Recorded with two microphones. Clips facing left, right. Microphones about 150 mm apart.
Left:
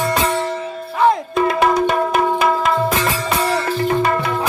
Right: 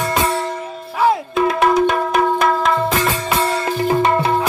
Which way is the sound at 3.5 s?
20° right (ahead or behind).